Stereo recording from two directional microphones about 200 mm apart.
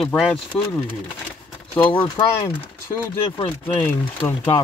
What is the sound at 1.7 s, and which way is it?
Speech, 25° left (ahead or behind).